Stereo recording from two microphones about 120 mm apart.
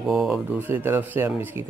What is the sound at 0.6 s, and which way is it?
Speech, 20° right (ahead or behind).